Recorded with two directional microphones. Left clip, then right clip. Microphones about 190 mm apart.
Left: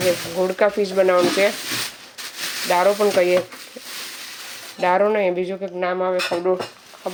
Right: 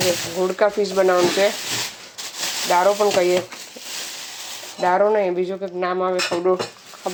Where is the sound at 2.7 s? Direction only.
15° left (ahead or behind).